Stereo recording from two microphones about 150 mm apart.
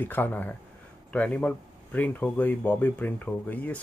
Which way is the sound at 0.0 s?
10° left (ahead or behind).